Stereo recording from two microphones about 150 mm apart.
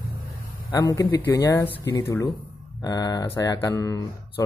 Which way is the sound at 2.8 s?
25° left (ahead or behind).